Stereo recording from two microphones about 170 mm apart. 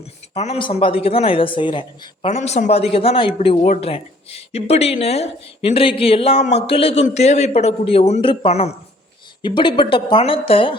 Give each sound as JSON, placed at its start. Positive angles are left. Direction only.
{"t": 0.3, "sound": "speech", "side_deg": 40}
{"t": 2.2, "sound": "speech", "side_deg": 40}